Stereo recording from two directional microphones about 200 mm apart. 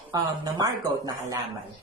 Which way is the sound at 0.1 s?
20° right (ahead or behind).